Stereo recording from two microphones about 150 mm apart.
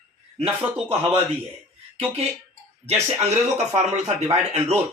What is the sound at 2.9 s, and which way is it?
Speech, 45° right (ahead or behind).